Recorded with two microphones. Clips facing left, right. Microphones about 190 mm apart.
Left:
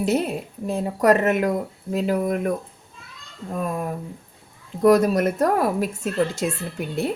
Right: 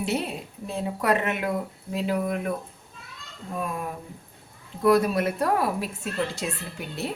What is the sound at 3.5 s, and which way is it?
A woman's voice, 40° left (ahead or behind).